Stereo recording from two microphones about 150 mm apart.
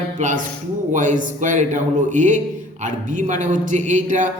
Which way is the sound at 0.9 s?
55° right (ahead or behind).